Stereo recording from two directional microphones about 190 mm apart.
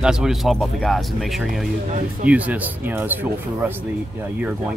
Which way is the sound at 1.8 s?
40° right (ahead or behind).